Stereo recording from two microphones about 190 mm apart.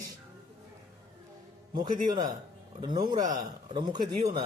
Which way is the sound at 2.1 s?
20° right (ahead or behind).